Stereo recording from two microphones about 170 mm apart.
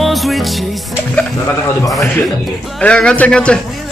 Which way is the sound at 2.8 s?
5° left (ahead or behind).